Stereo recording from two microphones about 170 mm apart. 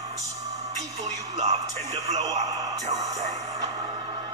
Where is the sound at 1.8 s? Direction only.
40° right (ahead or behind).